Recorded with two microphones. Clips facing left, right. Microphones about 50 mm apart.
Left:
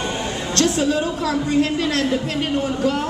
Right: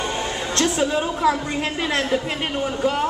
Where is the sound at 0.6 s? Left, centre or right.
Centre.